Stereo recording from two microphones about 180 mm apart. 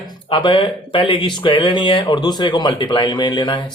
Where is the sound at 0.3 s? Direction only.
30° left (ahead or behind).